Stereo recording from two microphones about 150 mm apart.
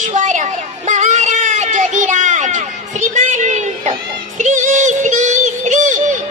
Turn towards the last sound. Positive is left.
turn(degrees=-55)  # may be behind; listen again after turning